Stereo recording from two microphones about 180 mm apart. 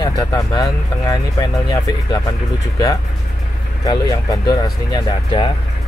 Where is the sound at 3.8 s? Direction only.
20° left (ahead or behind).